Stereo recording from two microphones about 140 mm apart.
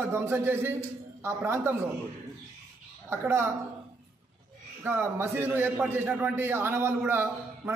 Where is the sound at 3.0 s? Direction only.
20° right (ahead or behind).